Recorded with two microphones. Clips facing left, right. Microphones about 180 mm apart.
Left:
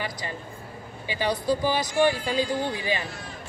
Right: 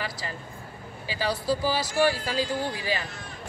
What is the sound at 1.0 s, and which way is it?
Speech, 20° left (ahead or behind).